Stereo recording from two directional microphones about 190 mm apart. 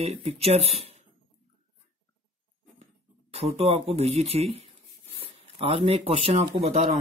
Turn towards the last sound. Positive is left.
turn(degrees=-35)  # may be behind; listen again after turning